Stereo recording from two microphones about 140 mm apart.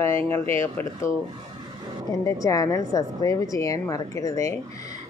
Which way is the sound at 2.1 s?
25° left (ahead or behind).